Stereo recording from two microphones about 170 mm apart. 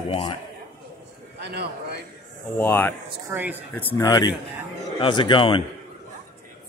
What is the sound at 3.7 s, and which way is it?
Speech, 10° left (ahead or behind).